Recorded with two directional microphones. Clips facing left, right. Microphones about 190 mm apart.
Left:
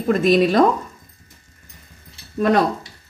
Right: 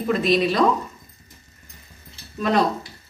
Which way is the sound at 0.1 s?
45° left (ahead or behind).